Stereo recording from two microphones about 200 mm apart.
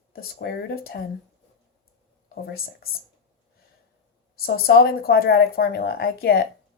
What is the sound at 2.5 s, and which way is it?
Speech, 50° left (ahead or behind).